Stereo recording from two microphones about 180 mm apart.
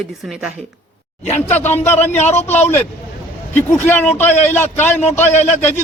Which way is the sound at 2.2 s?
40° left (ahead or behind).